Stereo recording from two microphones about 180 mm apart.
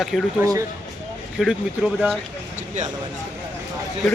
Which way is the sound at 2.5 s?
40° right (ahead or behind).